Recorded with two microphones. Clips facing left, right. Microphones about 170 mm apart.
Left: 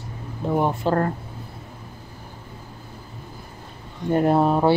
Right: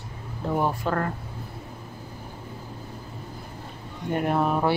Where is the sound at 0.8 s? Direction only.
30° left (ahead or behind).